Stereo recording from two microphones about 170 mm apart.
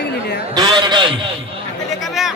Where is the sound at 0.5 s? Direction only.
25° right (ahead or behind).